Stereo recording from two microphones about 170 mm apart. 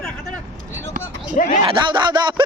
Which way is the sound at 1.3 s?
45° left (ahead or behind).